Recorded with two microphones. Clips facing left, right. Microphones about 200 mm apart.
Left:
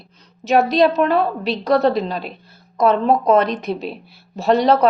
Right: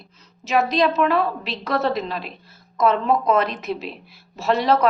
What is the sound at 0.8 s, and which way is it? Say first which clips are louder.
Speech: left 4 dB; 35° left (ahead or behind).